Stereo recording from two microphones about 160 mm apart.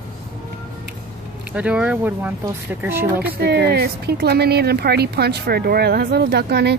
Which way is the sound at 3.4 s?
90° right.